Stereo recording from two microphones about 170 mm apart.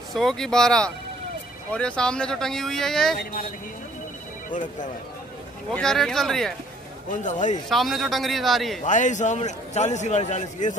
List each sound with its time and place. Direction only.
0.1 s speech: centre (ahead or behind)
5.7 s speech: 5° left (ahead or behind)
7.1 s a man's voice: 45° left (ahead or behind)
7.7 s speech: centre (ahead or behind)
8.8 s a man's voice: 45° left (ahead or behind)